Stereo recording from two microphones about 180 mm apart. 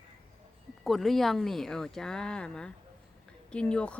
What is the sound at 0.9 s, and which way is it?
Speech, centre (ahead or behind).